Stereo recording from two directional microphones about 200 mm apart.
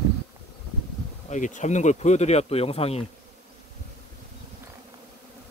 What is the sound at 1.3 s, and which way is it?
Speech, 40° left (ahead or behind).